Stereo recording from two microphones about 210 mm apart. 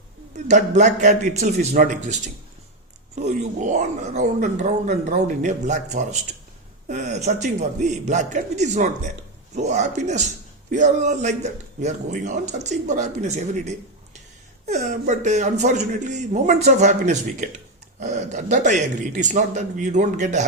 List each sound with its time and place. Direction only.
0.3 s a man's voice: 35° right (ahead or behind)